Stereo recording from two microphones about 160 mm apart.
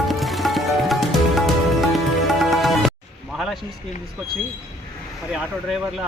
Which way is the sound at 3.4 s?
Centre (ahead or behind).